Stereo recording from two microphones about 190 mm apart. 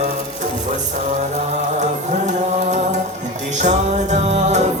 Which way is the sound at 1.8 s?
40° right (ahead or behind).